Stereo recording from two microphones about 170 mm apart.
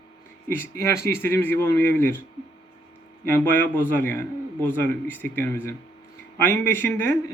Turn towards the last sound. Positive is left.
turn(degrees=15)  # may be behind; listen again after turning